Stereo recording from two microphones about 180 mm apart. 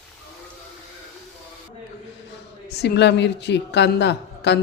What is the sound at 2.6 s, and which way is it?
A woman's voice, 65° left (ahead or behind).